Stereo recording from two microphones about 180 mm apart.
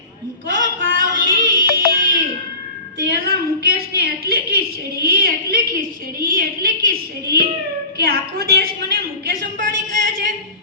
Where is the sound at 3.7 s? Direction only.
60° right (ahead or behind).